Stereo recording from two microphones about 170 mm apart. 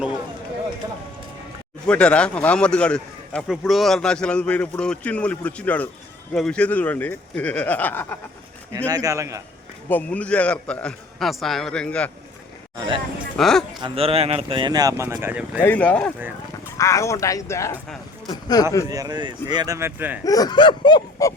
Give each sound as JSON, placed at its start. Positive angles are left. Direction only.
{"t": 1.9, "sound": "a man's voice", "side_deg": 5}
{"t": 8.9, "sound": "speech", "side_deg": -20}
{"t": 9.9, "sound": "a man's voice", "side_deg": 10}
{"t": 12.7, "sound": "speech", "side_deg": -25}
{"t": 13.3, "sound": "speech", "side_deg": 5}
{"t": 13.8, "sound": "speech", "side_deg": -35}
{"t": 15.6, "sound": "a man's voice", "side_deg": 10}
{"t": 18.3, "sound": "a sound", "side_deg": 25}
{"t": 18.9, "sound": "speech", "side_deg": -20}
{"t": 20.2, "sound": "a sound", "side_deg": 20}